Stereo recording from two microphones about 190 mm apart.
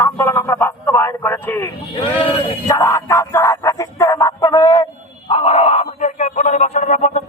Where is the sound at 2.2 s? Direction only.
15° left (ahead or behind).